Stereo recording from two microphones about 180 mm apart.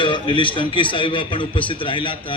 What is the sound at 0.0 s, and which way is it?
A man's voice, 25° left (ahead or behind).